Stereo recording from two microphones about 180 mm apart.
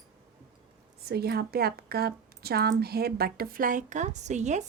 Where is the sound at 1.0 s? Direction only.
60° right (ahead or behind).